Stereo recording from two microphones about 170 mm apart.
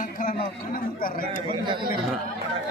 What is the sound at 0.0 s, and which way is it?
Speech, 55° left (ahead or behind).